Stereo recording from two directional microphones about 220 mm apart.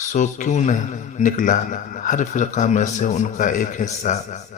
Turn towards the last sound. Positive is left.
turn(degrees=35)  # may be behind; listen again after turning